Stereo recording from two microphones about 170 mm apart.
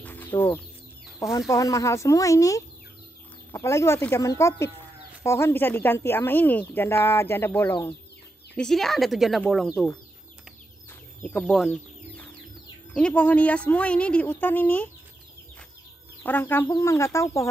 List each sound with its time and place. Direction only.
0.0 s bird: 10° left (ahead or behind)
1.5 s speech: 20° left (ahead or behind)
8.5 s speech: centre (ahead or behind)
11.2 s speech: 10° left (ahead or behind)
16.2 s speech: 10° left (ahead or behind)